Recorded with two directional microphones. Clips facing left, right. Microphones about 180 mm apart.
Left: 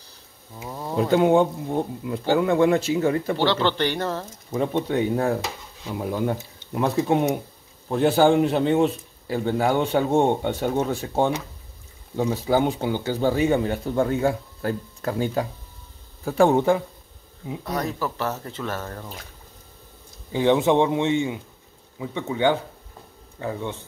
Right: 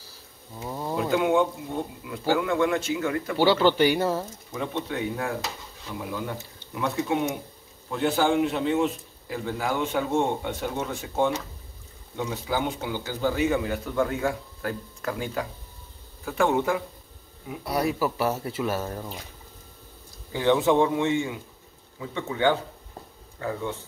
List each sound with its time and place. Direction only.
0.7 s a sound: centre (ahead or behind)
0.9 s a man's voice: 30° left (ahead or behind)
3.3 s speech: 10° right (ahead or behind)
4.5 s a man's voice: 40° left (ahead or behind)
5.9 s a man's voice: 45° left (ahead or behind)
17.6 s speech: 10° right (ahead or behind)
20.3 s speech: 20° left (ahead or behind)